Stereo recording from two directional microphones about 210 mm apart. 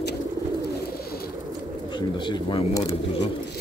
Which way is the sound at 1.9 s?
20° left (ahead or behind).